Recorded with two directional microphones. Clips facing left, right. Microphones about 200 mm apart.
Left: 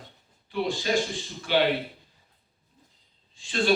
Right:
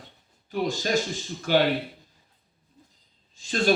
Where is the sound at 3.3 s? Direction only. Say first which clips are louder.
Right 1 dB; 45° right (ahead or behind).